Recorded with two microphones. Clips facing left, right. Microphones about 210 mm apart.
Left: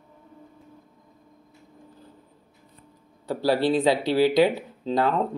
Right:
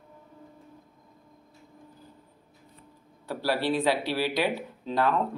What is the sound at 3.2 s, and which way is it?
Speech, 25° left (ahead or behind).